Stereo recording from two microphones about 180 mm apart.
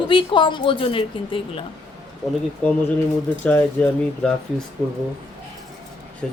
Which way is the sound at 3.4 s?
10° left (ahead or behind).